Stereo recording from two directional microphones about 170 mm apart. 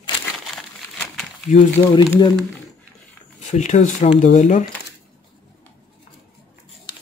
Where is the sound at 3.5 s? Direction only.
45° left (ahead or behind).